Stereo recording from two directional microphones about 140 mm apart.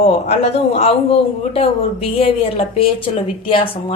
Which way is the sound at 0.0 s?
45° left (ahead or behind).